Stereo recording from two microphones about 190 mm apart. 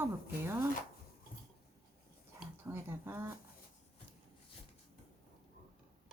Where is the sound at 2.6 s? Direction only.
10° right (ahead or behind).